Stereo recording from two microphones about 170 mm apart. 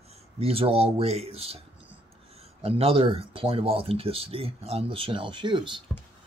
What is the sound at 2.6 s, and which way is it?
Speech, 35° right (ahead or behind).